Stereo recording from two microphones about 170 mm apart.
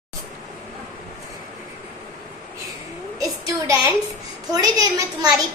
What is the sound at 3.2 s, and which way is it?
A woman's voice, 20° right (ahead or behind).